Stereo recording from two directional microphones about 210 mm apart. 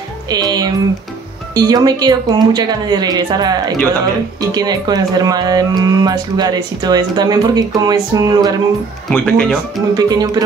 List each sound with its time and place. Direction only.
0.3 s speech: 20° right (ahead or behind)
9.1 s speech: 5° left (ahead or behind)
9.9 s speech: 20° right (ahead or behind)